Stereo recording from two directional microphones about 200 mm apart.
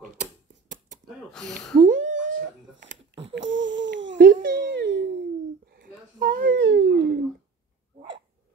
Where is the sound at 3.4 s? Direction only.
70° right (ahead or behind).